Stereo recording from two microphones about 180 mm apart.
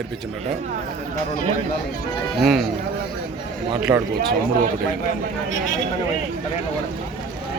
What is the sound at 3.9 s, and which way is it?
Speech, 20° right (ahead or behind).